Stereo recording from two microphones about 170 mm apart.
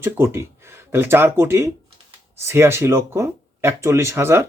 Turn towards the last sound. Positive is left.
turn(degrees=-15)  # may be behind; listen again after turning